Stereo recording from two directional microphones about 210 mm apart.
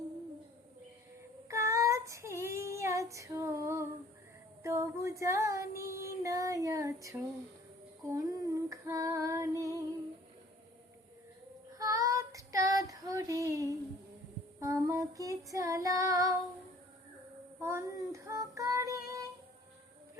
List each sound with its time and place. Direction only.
1.5 s child singing: 15° right (ahead or behind)
4.6 s female singing: 15° right (ahead or behind)
11.7 s child singing: 15° right (ahead or behind)
14.6 s female singing: 15° right (ahead or behind)
17.6 s child singing: 15° right (ahead or behind)